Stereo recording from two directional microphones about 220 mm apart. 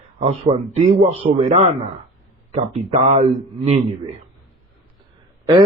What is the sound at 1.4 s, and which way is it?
Speech, 30° right (ahead or behind).